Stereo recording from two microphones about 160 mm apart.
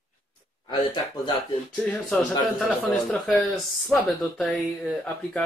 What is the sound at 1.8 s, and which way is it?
Speech, 5° left (ahead or behind).